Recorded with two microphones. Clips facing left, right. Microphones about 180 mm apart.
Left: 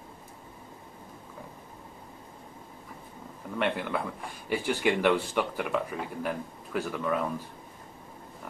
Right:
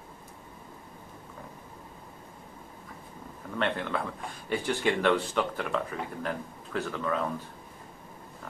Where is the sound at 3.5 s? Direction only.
10° left (ahead or behind).